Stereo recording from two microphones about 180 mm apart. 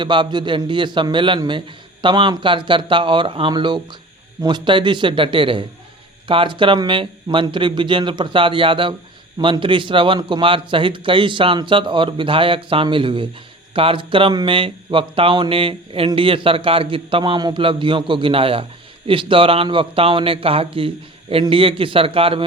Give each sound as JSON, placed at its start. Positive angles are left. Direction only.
{"t": 0.0, "sound": "a man's voice", "side_deg": -25}